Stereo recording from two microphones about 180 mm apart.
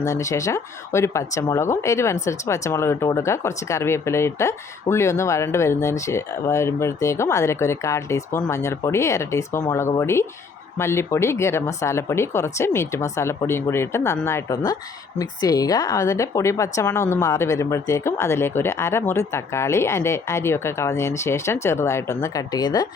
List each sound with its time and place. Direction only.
0.0 s speech: 15° left (ahead or behind)